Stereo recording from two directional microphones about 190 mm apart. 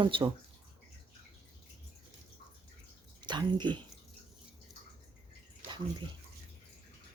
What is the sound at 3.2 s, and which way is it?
Speech, 25° right (ahead or behind).